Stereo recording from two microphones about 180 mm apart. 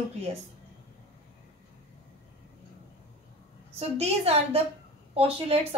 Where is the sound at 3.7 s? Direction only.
35° right (ahead or behind).